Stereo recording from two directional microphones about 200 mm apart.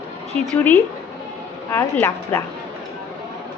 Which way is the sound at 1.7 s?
10° left (ahead or behind).